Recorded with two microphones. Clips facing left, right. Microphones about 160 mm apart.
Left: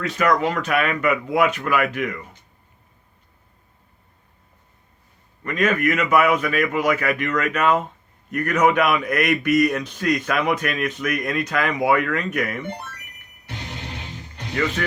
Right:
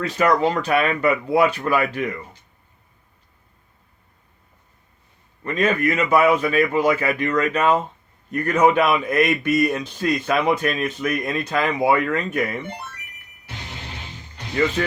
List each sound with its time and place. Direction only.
0.0 s speech: 30° right (ahead or behind)
5.4 s a man's voice: 30° right (ahead or behind)
14.8 s a man's voice: 25° right (ahead or behind)